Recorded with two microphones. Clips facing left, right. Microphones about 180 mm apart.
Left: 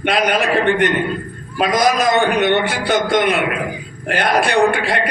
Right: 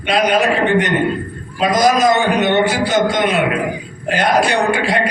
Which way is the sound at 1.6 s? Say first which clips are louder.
Right 2 dB; 60° left (ahead or behind).